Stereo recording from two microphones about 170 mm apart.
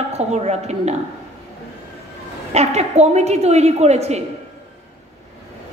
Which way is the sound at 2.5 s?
40° right (ahead or behind).